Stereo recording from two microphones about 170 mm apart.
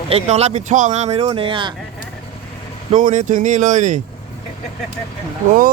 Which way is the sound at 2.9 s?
50° right (ahead or behind).